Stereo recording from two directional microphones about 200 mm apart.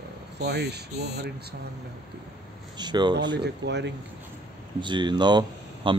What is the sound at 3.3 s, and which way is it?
Speech, 60° right (ahead or behind).